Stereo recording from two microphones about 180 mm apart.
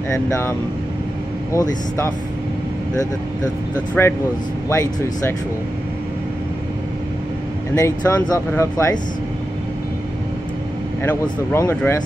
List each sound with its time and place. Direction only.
0.3 s speech: 15° left (ahead or behind)
4.0 s speech: 10° left (ahead or behind)
7.7 s speech: 15° left (ahead or behind)
11.1 s speech: 10° left (ahead or behind)